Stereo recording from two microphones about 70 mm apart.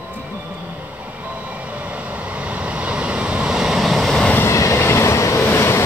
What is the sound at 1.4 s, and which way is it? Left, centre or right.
Vehicle, centre.